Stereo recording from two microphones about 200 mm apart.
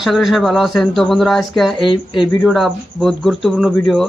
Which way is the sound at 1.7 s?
25° left (ahead or behind).